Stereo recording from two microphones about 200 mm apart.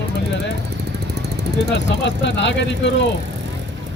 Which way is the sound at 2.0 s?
65° left (ahead or behind).